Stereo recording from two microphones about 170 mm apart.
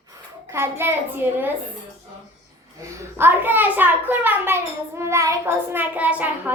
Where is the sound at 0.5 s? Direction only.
15° right (ahead or behind).